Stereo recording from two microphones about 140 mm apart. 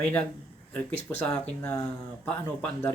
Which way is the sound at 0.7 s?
10° left (ahead or behind).